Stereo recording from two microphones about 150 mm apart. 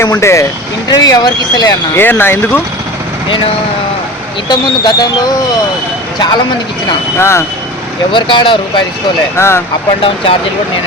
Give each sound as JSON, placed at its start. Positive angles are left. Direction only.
{"t": 0.0, "sound": "speech", "side_deg": 20}
{"t": 2.0, "sound": "speech", "side_deg": 15}
{"t": 4.4, "sound": "speech", "side_deg": 30}
{"t": 7.2, "sound": "speech", "side_deg": 15}
{"t": 8.1, "sound": "speech", "side_deg": 35}
{"t": 9.3, "sound": "speech", "side_deg": 15}